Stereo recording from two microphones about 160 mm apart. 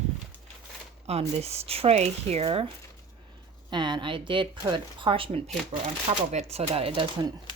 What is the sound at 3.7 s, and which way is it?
A woman's voice, 30° right (ahead or behind).